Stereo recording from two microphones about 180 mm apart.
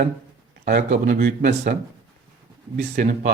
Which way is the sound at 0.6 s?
45° right (ahead or behind).